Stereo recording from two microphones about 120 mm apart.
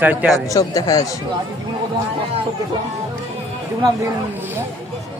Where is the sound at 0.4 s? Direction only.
30° left (ahead or behind).